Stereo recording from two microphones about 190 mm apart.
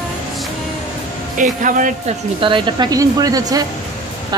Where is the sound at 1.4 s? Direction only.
45° right (ahead or behind).